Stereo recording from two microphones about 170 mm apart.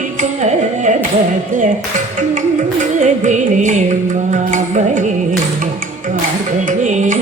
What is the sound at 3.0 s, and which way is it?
Carnatic music, 45° right (ahead or behind).